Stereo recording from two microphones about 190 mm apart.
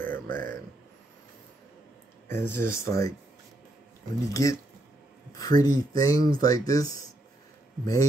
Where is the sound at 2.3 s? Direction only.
10° left (ahead or behind).